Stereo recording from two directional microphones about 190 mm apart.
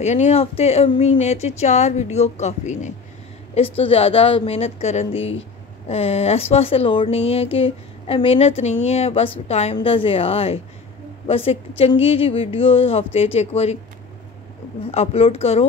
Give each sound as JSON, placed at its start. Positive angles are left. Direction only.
{"t": 0.0, "sound": "a woman's voice", "side_deg": 35}
{"t": 14.9, "sound": "a woman's voice", "side_deg": 30}